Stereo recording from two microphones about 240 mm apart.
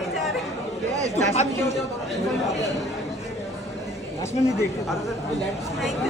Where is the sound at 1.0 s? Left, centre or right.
Right.